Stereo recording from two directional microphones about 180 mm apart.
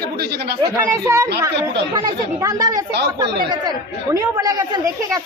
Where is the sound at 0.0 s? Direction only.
60° right (ahead or behind).